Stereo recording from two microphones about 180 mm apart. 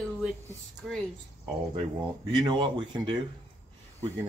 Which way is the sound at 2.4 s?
25° right (ahead or behind).